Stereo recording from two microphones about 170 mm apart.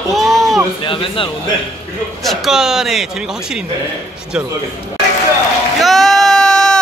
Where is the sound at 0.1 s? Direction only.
Centre (ahead or behind).